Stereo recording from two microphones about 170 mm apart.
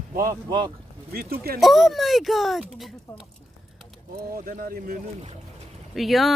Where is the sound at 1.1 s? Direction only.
65° right (ahead or behind).